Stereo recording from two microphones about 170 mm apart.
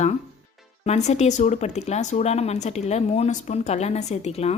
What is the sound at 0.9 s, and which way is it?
Speech, 40° left (ahead or behind).